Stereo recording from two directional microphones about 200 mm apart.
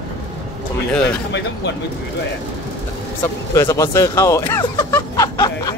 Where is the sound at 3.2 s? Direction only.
15° left (ahead or behind).